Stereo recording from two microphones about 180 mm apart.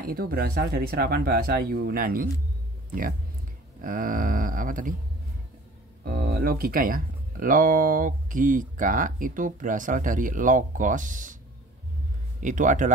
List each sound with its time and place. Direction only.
0.0 s speech: 55° right (ahead or behind)
6.0 s speech: 60° right (ahead or behind)
12.4 s speech: 45° right (ahead or behind)